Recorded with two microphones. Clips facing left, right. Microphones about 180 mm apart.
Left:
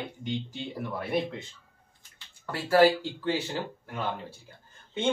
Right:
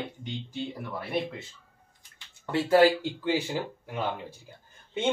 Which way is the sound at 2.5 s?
20° right (ahead or behind).